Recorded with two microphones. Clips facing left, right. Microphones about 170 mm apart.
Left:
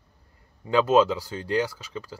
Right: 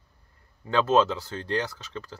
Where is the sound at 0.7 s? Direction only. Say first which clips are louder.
Left 2 dB; 10° left (ahead or behind).